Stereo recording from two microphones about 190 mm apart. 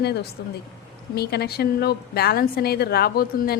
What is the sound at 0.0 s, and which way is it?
A woman's voice, 60° left (ahead or behind).